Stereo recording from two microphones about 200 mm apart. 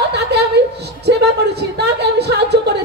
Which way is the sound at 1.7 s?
55° right (ahead or behind).